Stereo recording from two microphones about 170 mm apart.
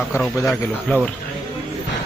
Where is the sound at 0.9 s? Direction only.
10° left (ahead or behind).